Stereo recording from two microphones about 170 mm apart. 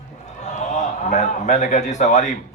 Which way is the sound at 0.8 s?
45° left (ahead or behind).